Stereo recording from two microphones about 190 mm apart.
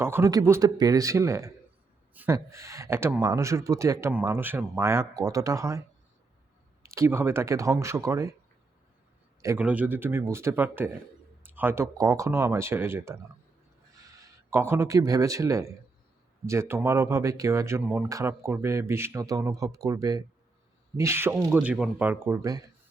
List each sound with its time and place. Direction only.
0.0 s speech: 15° right (ahead or behind)
6.8 s speech: 15° right (ahead or behind)
9.4 s speech: 10° right (ahead or behind)